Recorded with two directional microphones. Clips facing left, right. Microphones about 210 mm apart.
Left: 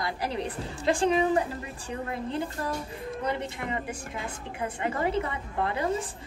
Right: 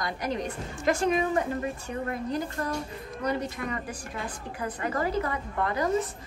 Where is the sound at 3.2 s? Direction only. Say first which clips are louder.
Right 3 dB; 25° left (ahead or behind).